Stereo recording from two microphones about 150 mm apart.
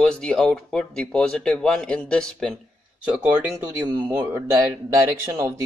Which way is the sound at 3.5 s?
25° right (ahead or behind).